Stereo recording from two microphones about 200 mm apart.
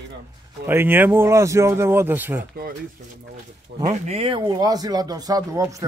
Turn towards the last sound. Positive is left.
turn(degrees=-15)  # may be behind; listen again after turning